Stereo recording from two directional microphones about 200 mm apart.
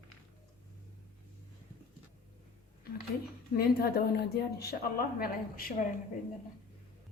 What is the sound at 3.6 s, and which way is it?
A woman's voice, 50° left (ahead or behind).